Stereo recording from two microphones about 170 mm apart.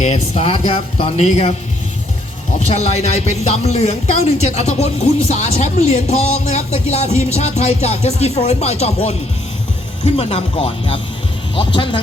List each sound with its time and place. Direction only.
0.0 s speech: 40° left (ahead or behind)
2.6 s speech: 40° left (ahead or behind)